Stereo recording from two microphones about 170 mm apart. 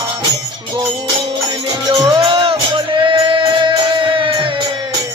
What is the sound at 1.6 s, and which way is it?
Music, 25° right (ahead or behind).